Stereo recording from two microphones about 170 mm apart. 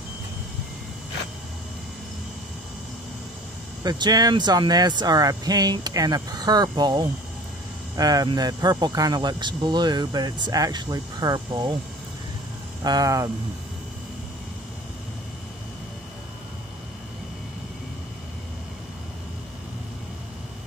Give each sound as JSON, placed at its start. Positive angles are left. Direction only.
{"t": 3.8, "sound": "speech", "side_deg": -25}
{"t": 12.8, "sound": "speech", "side_deg": -20}